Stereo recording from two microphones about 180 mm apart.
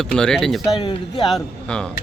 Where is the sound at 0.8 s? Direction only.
25° left (ahead or behind).